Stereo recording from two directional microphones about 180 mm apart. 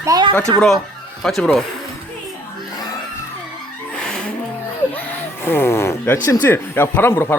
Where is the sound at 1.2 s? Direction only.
5° left (ahead or behind).